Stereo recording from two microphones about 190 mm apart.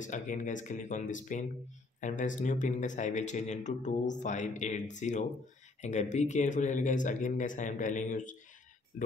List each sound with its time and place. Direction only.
0.0 s speech: 40° left (ahead or behind)